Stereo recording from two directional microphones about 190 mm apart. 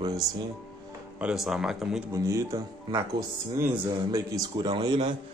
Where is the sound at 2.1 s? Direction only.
15° right (ahead or behind).